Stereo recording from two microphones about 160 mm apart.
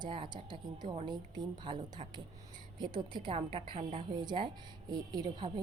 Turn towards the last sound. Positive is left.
turn(degrees=-25)  # may be behind; listen again after turning